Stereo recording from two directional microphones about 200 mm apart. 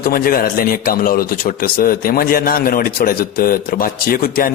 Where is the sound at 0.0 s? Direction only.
50° left (ahead or behind).